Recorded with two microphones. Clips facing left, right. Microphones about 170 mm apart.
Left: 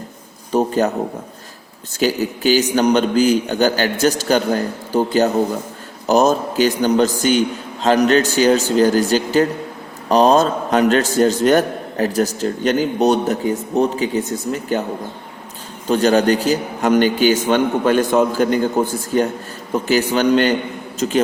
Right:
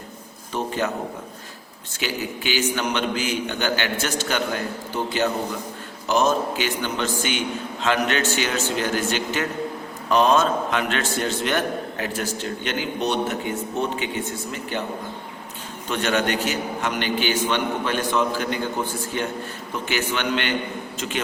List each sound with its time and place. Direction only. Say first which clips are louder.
0.5 s speech: left 9 dB; 40° left (ahead or behind)
2.0 s a man's voice: left 10 dB; 40° left (ahead or behind)
15.9 s a man's voice: left 9 dB; 35° left (ahead or behind)